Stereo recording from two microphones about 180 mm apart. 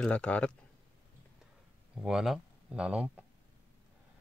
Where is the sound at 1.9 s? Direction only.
5° right (ahead or behind).